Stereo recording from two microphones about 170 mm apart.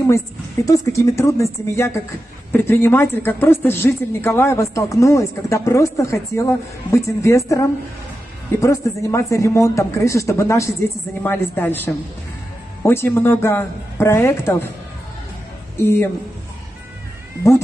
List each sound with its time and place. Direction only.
0.7 s speech: 20° left (ahead or behind)
15.8 s speech: 15° left (ahead or behind)